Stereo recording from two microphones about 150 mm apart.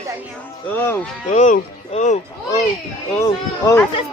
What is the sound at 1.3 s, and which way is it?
Speech, 55° left (ahead or behind).